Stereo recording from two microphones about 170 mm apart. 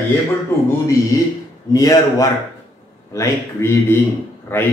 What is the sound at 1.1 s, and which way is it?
A man's voice, 20° left (ahead or behind).